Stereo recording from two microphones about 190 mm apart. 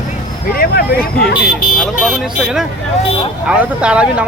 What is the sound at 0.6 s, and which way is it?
Speech, 55° left (ahead or behind).